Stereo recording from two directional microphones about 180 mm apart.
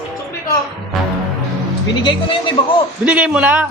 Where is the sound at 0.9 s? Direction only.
Centre (ahead or behind).